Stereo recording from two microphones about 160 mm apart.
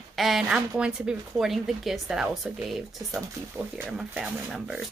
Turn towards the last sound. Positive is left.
turn(degrees=0)  # may be behind; listen again after turning